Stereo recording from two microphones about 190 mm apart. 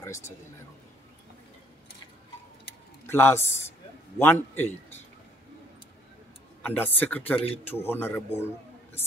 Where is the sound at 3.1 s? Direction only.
10° left (ahead or behind).